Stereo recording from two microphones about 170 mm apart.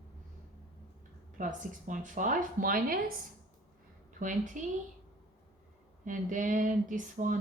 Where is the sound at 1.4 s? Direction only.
50° right (ahead or behind).